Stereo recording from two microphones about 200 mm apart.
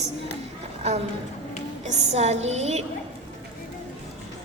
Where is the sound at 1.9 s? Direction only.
35° right (ahead or behind).